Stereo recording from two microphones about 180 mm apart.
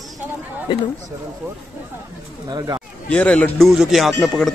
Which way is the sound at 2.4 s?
20° right (ahead or behind).